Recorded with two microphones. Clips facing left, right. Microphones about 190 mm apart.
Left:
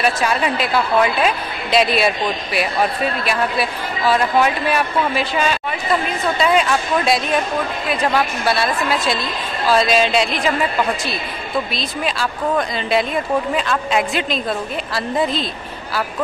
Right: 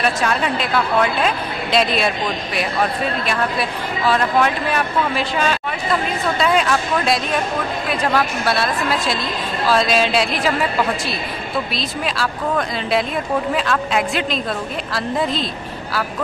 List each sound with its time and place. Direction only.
0.0 s speech: 5° left (ahead or behind)
6.4 s speech: centre (ahead or behind)
11.7 s speech: centre (ahead or behind)